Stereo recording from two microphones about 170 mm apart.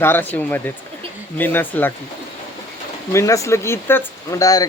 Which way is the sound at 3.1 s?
15° left (ahead or behind).